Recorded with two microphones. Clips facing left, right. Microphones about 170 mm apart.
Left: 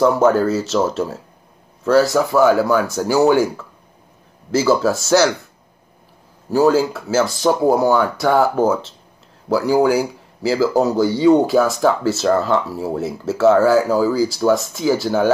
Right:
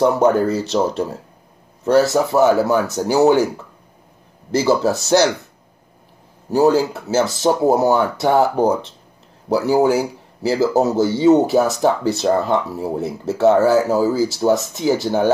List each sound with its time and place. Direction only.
0.0 s speech: 15° right (ahead or behind)
4.6 s speech: 20° right (ahead or behind)
6.5 s speech: 20° right (ahead or behind)